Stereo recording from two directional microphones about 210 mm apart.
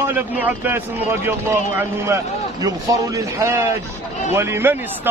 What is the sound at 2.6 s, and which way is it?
Speech, 15° right (ahead or behind).